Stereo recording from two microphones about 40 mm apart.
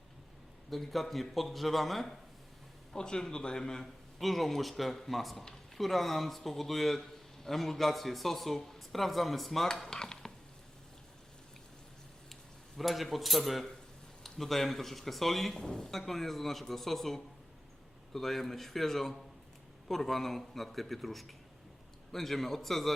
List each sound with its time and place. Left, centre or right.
0.7 s speech: centre
2.9 s a man's voice: centre
4.2 s speech: centre
12.3 s speech: centre